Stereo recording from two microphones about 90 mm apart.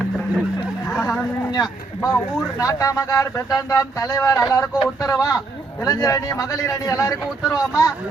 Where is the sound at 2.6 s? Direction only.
40° left (ahead or behind).